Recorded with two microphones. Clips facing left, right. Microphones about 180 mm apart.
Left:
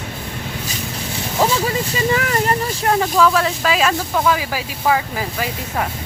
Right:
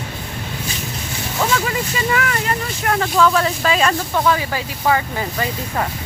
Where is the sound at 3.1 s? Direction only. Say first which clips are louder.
Even; centre (ahead or behind).